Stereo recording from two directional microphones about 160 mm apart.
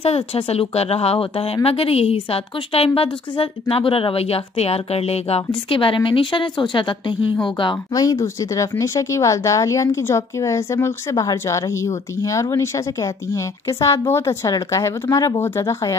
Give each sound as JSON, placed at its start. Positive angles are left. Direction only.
{"t": 0.0, "sound": "speech", "side_deg": 40}